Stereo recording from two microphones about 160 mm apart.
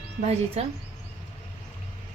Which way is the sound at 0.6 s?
40° right (ahead or behind).